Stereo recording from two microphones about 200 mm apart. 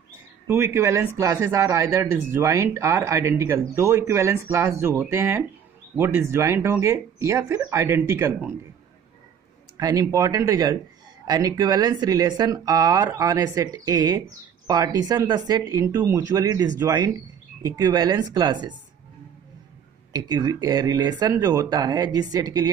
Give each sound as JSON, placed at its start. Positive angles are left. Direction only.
{"t": 0.5, "sound": "a man's voice", "side_deg": -10}
{"t": 9.8, "sound": "a man's voice", "side_deg": -20}
{"t": 20.1, "sound": "speech", "side_deg": -20}